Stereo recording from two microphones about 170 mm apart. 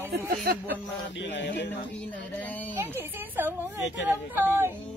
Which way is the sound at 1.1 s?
90° left.